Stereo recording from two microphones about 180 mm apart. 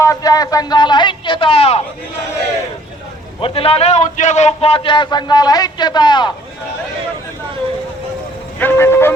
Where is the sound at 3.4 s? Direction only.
30° left (ahead or behind).